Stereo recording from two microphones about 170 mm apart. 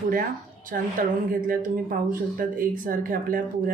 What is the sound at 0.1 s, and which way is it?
Speech, 55° right (ahead or behind).